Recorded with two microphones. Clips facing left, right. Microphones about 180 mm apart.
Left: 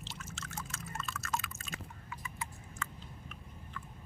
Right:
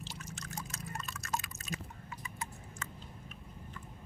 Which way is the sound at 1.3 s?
40° right (ahead or behind).